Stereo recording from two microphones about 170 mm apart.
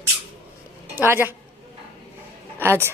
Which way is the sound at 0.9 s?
15° right (ahead or behind).